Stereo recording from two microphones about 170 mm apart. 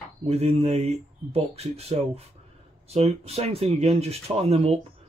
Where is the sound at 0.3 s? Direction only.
35° right (ahead or behind).